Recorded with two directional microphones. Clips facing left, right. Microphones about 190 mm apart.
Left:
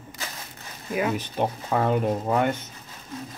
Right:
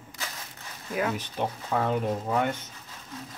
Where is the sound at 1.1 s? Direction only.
55° left (ahead or behind).